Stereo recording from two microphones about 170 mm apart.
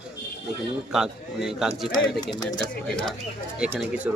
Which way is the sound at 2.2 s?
25° left (ahead or behind).